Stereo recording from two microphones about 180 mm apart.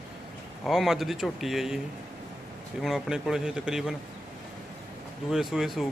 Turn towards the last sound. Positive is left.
turn(degrees=0)  # may be behind; listen again after turning